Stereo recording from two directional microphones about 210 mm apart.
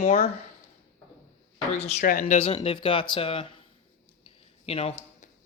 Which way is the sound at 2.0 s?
40° left (ahead or behind).